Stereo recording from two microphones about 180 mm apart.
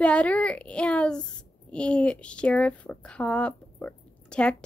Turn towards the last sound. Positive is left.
turn(degrees=5)  # may be behind; listen again after turning